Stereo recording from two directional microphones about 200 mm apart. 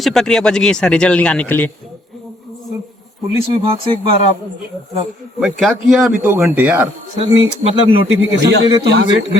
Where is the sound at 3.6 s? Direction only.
25° right (ahead or behind).